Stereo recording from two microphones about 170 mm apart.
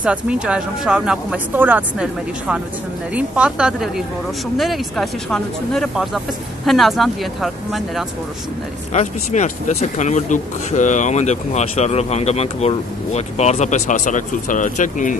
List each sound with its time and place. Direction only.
0.0 s speech: 5° right (ahead or behind)
8.9 s speech: 45° left (ahead or behind)